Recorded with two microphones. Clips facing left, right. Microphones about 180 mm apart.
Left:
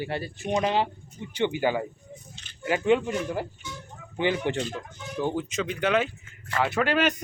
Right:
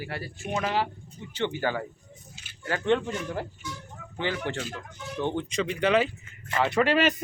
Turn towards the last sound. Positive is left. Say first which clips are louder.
# right 1 dB
turn(degrees=0)  # may be behind; listen again after turning